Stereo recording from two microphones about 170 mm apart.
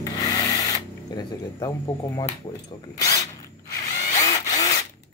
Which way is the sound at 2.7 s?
20° left (ahead or behind).